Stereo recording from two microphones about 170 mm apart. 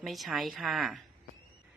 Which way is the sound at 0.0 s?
Centre (ahead or behind).